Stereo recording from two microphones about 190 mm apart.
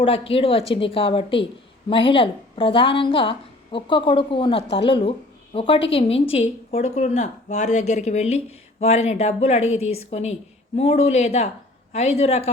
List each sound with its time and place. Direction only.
0.0 s a woman's voice: 30° left (ahead or behind)